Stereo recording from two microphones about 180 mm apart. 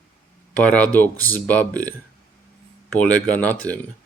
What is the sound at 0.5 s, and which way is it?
Speech, 5° left (ahead or behind).